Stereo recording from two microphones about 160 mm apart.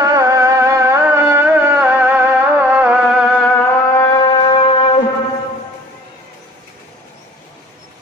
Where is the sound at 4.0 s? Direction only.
25° left (ahead or behind).